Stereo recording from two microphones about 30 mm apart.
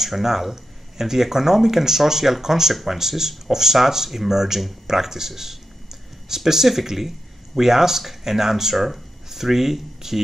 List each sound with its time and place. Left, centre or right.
0.0 s speech: centre
2.7 s speech: centre